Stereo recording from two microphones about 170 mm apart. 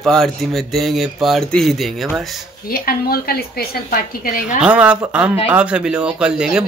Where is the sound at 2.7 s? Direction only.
60° left (ahead or behind).